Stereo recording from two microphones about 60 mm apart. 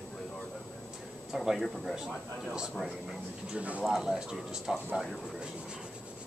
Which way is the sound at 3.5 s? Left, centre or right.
Right.